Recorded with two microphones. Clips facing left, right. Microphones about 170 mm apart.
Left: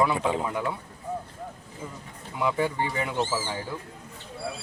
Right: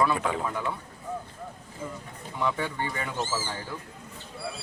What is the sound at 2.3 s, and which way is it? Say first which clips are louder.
Speech: left 3 dB; 10° left (ahead or behind).